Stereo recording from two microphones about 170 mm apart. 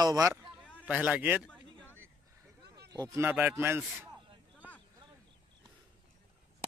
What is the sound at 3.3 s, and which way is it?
Speech, 10° right (ahead or behind).